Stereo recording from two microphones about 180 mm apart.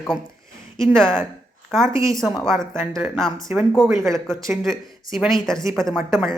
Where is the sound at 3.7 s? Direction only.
Centre (ahead or behind).